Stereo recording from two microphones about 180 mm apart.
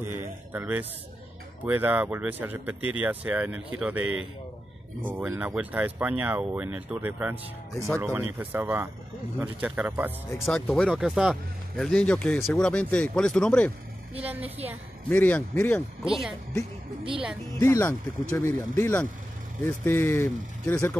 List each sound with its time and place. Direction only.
0.0 s speech: 10° right (ahead or behind)
10.4 s speech: 5° left (ahead or behind)
15.0 s speech: 10° left (ahead or behind)
16.0 s speech: 5° right (ahead or behind)
17.6 s speech: 15° left (ahead or behind)